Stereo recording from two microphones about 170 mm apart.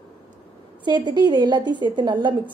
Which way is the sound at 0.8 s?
25° right (ahead or behind).